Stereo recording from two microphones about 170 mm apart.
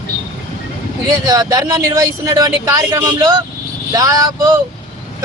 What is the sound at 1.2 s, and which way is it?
Speech, 20° right (ahead or behind).